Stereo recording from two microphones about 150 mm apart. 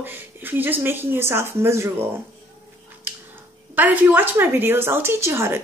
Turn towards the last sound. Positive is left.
turn(degrees=-15)  # may be behind; listen again after turning